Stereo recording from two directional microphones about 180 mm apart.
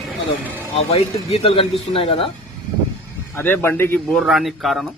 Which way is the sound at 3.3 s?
10° left (ahead or behind).